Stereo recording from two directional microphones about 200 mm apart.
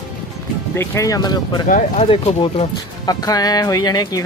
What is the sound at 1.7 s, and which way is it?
Speech, 40° left (ahead or behind).